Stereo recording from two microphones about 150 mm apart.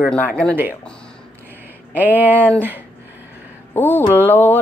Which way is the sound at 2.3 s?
10° left (ahead or behind).